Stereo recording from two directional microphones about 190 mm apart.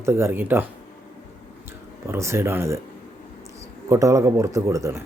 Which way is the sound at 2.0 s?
15° right (ahead or behind).